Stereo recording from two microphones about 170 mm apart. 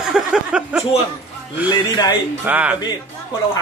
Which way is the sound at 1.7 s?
25° left (ahead or behind).